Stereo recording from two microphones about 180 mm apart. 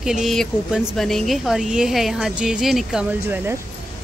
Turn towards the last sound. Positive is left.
turn(degrees=-10)  # may be behind; listen again after turning